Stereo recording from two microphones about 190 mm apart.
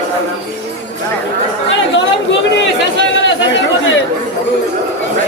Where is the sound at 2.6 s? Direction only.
70° left (ahead or behind).